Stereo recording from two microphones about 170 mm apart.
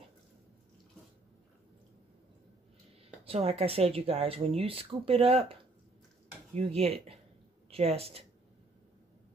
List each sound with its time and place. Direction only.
3.3 s speech: 35° right (ahead or behind)